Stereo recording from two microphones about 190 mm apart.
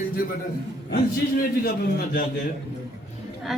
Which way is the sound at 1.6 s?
50° left (ahead or behind).